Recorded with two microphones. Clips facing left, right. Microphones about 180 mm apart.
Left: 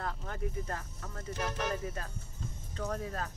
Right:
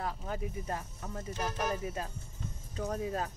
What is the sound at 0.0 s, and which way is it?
Speech, 10° right (ahead or behind).